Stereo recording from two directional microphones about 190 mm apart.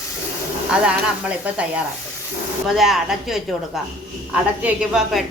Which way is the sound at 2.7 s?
Centre (ahead or behind).